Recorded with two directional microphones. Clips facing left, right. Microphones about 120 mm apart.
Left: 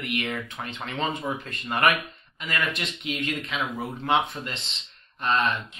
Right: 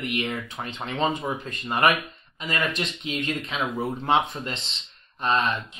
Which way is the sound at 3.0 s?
30° right (ahead or behind).